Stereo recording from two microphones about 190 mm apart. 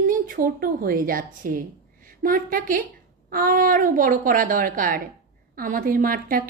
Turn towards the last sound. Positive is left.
turn(degrees=-50)  # may be behind; listen again after turning